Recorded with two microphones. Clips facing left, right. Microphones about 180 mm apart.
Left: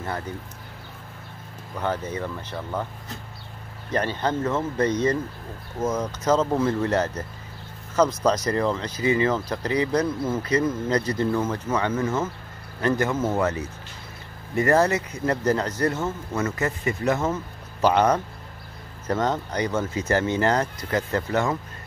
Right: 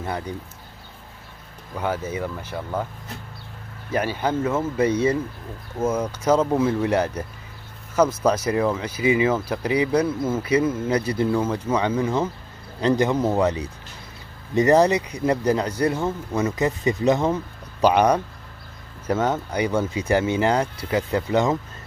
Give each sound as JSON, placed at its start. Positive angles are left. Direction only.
{"t": 0.0, "sound": "speech", "side_deg": -15}
{"t": 1.8, "sound": "speech", "side_deg": -10}
{"t": 3.9, "sound": "speech", "side_deg": -10}